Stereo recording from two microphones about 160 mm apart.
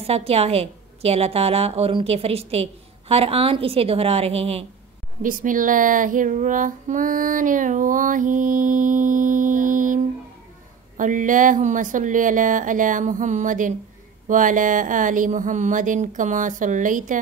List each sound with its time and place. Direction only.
0.0 s a woman's voice: 40° right (ahead or behind)
5.2 s speech: 55° right (ahead or behind)
11.0 s speech: 55° right (ahead or behind)